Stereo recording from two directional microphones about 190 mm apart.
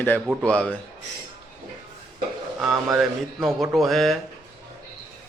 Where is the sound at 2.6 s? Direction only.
5° right (ahead or behind).